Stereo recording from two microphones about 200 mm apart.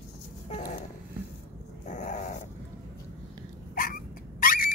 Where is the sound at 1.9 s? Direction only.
35° left (ahead or behind).